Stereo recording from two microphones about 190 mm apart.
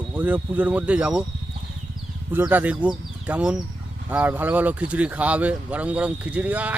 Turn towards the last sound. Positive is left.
turn(degrees=-10)  # may be behind; listen again after turning